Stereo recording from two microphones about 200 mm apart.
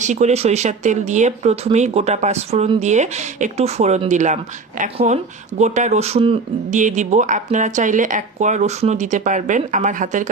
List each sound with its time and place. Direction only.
0.0 s speech: 35° right (ahead or behind)